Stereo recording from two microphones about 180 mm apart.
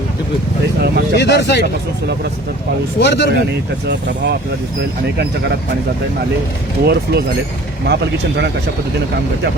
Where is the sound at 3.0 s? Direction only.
75° left (ahead or behind).